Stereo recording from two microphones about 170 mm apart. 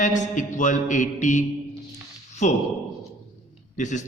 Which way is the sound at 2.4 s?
45° left (ahead or behind).